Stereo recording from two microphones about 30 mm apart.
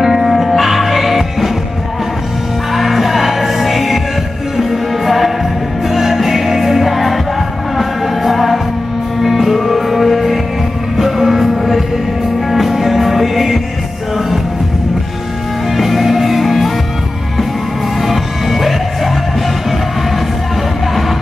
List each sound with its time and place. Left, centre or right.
0.0 s music: centre
2.7 s music: centre
15.7 s music: centre
18.0 s music: centre